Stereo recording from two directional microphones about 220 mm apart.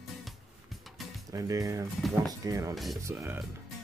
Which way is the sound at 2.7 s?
Centre (ahead or behind).